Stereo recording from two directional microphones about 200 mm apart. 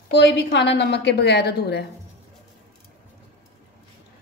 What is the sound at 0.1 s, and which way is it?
A woman's voice, 60° left (ahead or behind).